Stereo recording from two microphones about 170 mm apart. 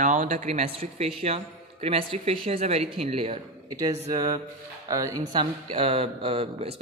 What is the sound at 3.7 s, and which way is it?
Speech, 20° right (ahead or behind).